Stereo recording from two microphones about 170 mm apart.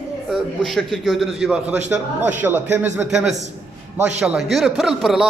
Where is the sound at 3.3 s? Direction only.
40° right (ahead or behind).